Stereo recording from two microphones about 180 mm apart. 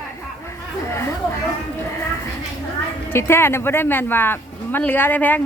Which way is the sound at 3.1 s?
15° left (ahead or behind).